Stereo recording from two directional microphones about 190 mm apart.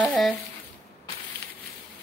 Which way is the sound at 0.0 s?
5° left (ahead or behind).